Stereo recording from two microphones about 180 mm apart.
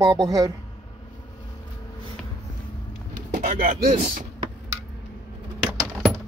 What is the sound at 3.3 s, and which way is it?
Speech, 50° right (ahead or behind).